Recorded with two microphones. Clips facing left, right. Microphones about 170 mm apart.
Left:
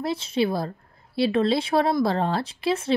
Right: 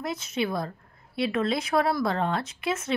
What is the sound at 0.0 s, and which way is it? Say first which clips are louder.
Speech: left 5 dB; 30° left (ahead or behind).